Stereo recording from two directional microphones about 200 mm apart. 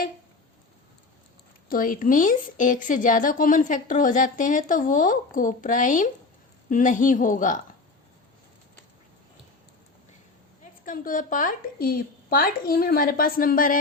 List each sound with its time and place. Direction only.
1.7 s a woman's voice: 45° left (ahead or behind)
10.8 s a woman's voice: 45° left (ahead or behind)